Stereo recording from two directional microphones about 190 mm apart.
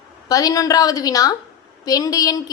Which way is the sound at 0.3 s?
20° left (ahead or behind).